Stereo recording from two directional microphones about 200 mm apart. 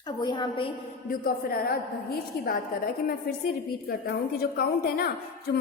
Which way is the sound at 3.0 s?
50° left (ahead or behind).